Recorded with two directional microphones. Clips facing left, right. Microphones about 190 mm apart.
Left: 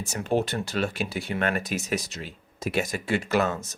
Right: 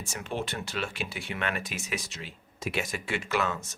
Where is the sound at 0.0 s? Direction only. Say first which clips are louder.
Left 8 dB; 40° left (ahead or behind).